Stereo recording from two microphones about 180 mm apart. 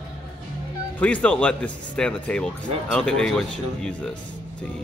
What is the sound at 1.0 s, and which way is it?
A woman's voice, 10° left (ahead or behind).